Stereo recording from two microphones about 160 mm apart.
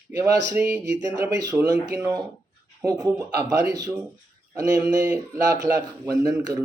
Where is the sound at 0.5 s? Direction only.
10° right (ahead or behind).